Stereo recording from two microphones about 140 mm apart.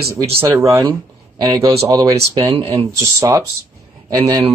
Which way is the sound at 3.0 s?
20° right (ahead or behind).